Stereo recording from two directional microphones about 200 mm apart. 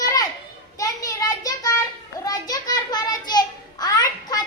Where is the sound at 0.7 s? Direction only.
15° left (ahead or behind).